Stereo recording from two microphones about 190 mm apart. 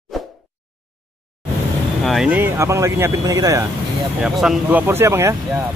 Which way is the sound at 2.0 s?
5° right (ahead or behind).